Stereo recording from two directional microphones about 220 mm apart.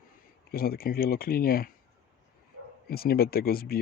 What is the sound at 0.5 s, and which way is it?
Speech, 40° left (ahead or behind).